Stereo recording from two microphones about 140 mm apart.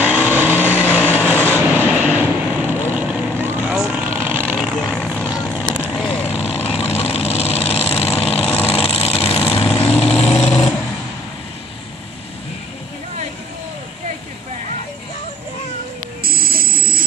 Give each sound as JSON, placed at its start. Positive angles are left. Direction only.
{"t": 0.0, "sound": "vehicle", "side_deg": -10}
{"t": 4.7, "sound": "vehicle", "side_deg": 0}
{"t": 6.6, "sound": "vehicle", "side_deg": 50}
{"t": 16.3, "sound": "buzzer", "side_deg": -90}